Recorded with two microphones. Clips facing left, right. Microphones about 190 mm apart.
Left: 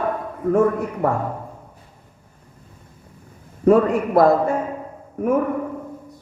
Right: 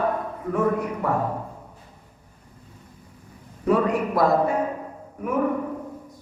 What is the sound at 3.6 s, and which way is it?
Speech, 50° left (ahead or behind).